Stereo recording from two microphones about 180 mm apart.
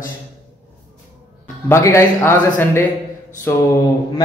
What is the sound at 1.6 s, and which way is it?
A man's voice, 15° left (ahead or behind).